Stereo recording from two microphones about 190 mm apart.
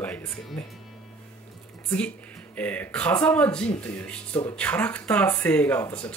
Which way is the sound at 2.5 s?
5° left (ahead or behind).